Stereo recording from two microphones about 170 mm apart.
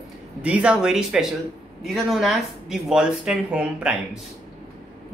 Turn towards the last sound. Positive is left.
turn(degrees=-5)  # may be behind; listen again after turning